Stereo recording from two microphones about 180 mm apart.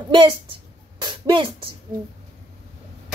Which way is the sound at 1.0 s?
25° right (ahead or behind).